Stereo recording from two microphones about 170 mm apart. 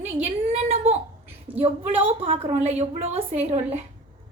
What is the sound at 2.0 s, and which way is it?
A woman's voice, 35° right (ahead or behind).